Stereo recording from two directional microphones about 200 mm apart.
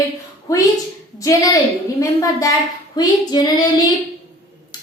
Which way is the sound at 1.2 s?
15° left (ahead or behind).